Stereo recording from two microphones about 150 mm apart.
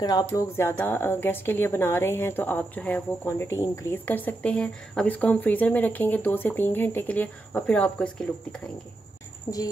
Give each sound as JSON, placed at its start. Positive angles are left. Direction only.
{"t": 0.0, "sound": "speech", "side_deg": 25}
{"t": 9.5, "sound": "speech", "side_deg": 30}